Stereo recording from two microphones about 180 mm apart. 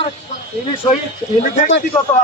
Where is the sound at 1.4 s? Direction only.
45° left (ahead or behind).